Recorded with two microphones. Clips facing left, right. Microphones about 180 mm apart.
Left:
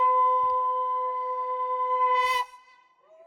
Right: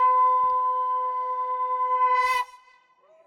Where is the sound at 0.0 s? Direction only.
20° left (ahead or behind).